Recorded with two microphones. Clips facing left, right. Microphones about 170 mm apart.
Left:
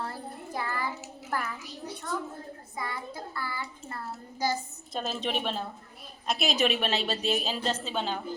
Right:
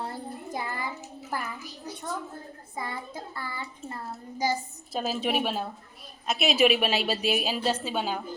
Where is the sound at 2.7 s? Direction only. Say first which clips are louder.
Right 1 dB; 25° right (ahead or behind); by 8.2 s 10° right (ahead or behind).